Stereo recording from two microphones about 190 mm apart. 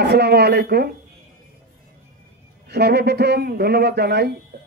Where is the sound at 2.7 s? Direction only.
60° right (ahead or behind).